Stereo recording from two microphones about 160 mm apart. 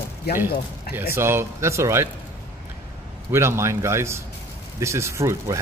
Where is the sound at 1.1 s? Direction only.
15° right (ahead or behind).